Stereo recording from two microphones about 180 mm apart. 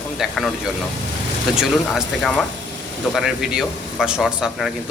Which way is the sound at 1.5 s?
Centre (ahead or behind).